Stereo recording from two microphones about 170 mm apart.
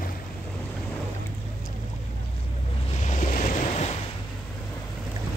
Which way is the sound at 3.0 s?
45° left (ahead or behind).